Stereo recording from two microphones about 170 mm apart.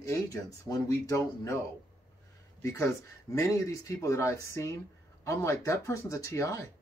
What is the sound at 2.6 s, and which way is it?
Speech, 20° left (ahead or behind).